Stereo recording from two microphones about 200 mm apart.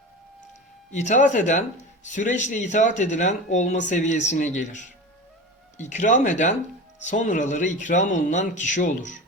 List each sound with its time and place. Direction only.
0.9 s speech: 35° left (ahead or behind)